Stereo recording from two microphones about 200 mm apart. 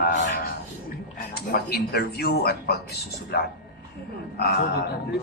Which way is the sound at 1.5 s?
50° left (ahead or behind).